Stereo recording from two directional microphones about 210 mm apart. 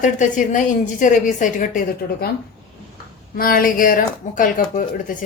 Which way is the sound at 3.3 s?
45° left (ahead or behind).